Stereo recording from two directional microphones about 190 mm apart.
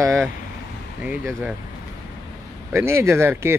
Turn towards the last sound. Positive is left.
turn(degrees=-15)  # may be behind; listen again after turning